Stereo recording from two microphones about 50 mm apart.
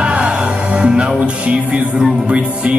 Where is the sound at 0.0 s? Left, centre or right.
Centre.